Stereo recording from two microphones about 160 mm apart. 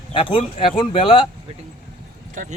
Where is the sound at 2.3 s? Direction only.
55° right (ahead or behind).